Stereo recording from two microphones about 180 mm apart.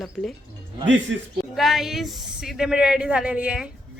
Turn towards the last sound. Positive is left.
turn(degrees=-5)  # may be behind; listen again after turning